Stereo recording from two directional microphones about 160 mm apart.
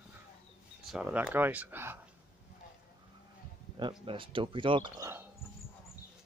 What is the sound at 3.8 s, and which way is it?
Speech, 30° right (ahead or behind).